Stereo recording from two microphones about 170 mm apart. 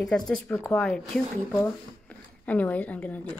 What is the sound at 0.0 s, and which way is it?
Speech, 5° left (ahead or behind).